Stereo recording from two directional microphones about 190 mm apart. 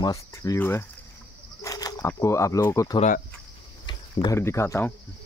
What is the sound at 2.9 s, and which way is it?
Speech, 40° left (ahead or behind).